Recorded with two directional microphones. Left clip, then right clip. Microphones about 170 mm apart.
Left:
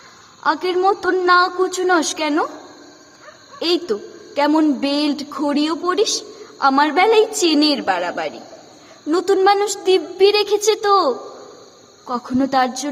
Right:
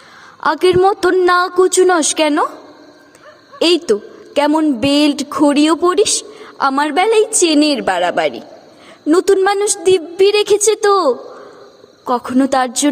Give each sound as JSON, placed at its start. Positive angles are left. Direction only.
{"t": 0.4, "sound": "a woman's voice", "side_deg": -45}
{"t": 3.6, "sound": "a woman's voice", "side_deg": -45}